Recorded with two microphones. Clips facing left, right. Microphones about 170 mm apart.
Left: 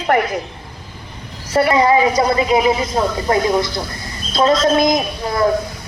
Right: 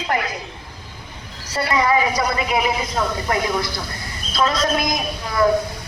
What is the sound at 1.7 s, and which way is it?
Speech, 25° left (ahead or behind).